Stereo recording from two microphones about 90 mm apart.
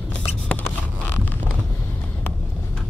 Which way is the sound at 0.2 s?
20° left (ahead or behind).